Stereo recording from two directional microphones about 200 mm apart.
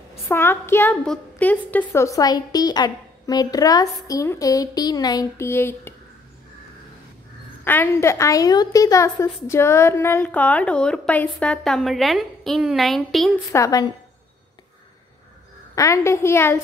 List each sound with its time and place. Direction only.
0.3 s a woman's voice: 10° left (ahead or behind)
7.6 s a woman's voice: 10° left (ahead or behind)
13.5 s a woman's voice: 15° left (ahead or behind)
15.7 s a woman's voice: 15° left (ahead or behind)